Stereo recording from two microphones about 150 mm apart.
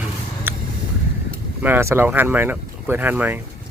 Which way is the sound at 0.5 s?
15° right (ahead or behind).